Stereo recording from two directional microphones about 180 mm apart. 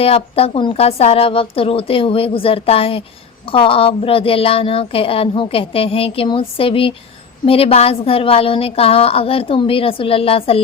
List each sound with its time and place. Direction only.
0.0 s a woman's voice: 30° left (ahead or behind)